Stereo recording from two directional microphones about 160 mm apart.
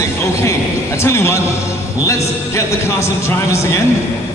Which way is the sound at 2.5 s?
15° left (ahead or behind).